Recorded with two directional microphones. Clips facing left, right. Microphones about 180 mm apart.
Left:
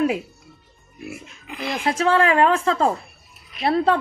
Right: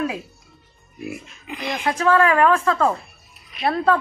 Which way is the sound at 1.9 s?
25° left (ahead or behind).